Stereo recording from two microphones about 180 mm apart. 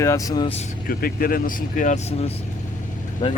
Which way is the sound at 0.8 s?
55° left (ahead or behind).